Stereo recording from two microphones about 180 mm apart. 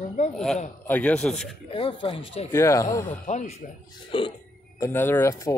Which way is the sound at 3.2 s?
40° left (ahead or behind).